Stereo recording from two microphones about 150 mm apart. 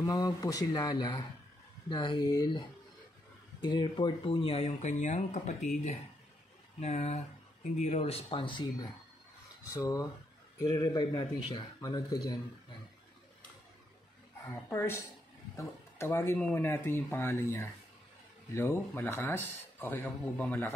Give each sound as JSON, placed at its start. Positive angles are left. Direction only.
{"t": 0.0, "sound": "speech", "side_deg": 25}
{"t": 3.6, "sound": "speech", "side_deg": 30}
{"t": 6.8, "sound": "speech", "side_deg": 45}
{"t": 9.8, "sound": "speech", "side_deg": 20}
{"t": 14.4, "sound": "speech", "side_deg": 20}